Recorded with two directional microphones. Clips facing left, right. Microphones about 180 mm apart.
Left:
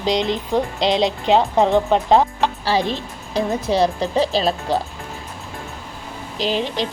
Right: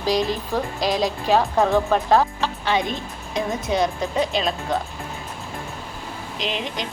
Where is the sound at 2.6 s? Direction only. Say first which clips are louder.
Even; 35° left (ahead or behind).